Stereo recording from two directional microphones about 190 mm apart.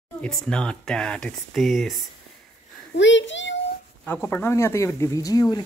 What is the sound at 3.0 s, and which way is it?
Speech, 75° left (ahead or behind).